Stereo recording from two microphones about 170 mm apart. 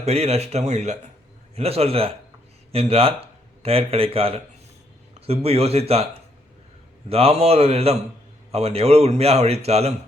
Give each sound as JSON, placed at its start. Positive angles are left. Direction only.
{"t": 0.0, "sound": "a man's voice", "side_deg": -40}